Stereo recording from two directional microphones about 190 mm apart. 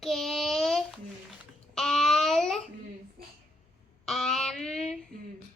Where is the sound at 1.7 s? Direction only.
Centre (ahead or behind).